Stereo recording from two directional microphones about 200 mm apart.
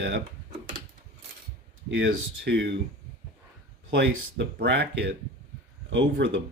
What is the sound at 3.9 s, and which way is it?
Speech, 60° right (ahead or behind).